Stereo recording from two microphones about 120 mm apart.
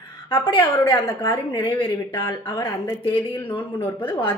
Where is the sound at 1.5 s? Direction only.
40° left (ahead or behind).